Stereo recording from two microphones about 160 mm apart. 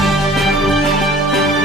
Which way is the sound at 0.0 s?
Centre (ahead or behind).